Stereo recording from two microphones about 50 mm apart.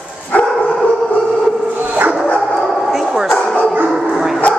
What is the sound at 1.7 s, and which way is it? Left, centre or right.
Dog, right.